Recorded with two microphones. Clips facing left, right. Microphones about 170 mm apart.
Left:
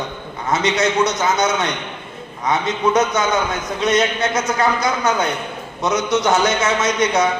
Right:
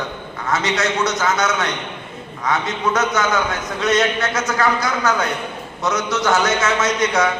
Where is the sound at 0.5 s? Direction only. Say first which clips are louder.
Left 3 dB; 20° left (ahead or behind).